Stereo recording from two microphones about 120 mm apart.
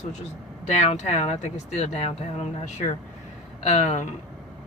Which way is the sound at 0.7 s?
70° left (ahead or behind).